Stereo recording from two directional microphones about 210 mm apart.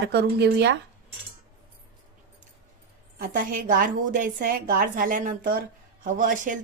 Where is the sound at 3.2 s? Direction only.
40° right (ahead or behind).